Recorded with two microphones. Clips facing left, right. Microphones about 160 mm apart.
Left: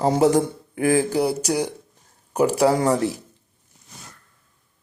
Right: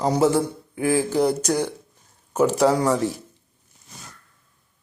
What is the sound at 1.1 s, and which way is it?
A man's voice, 10° left (ahead or behind).